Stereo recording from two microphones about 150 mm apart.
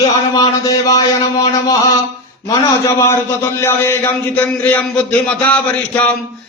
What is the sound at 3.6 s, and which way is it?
A man's voice, 15° left (ahead or behind).